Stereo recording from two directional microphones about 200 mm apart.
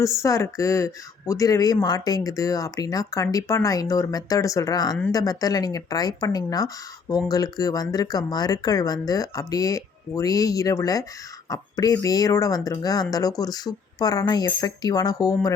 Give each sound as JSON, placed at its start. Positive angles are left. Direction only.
{"t": 0.0, "sound": "speech", "side_deg": 15}